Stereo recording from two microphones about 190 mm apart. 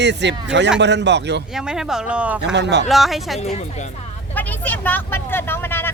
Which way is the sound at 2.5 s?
65° right (ahead or behind).